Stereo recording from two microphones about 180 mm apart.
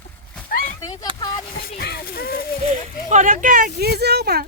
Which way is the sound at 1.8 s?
60° left (ahead or behind).